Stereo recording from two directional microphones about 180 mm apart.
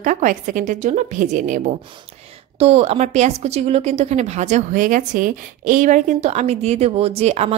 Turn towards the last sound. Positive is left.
turn(degrees=-35)  # may be behind; listen again after turning